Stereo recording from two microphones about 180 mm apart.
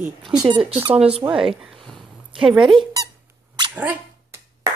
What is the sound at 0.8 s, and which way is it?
Speech, 35° right (ahead or behind).